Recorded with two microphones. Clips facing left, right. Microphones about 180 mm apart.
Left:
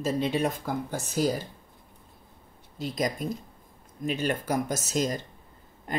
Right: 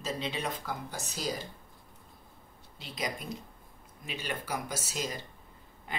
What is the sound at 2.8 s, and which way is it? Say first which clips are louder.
Speech: left 8 dB; 45° left (ahead or behind).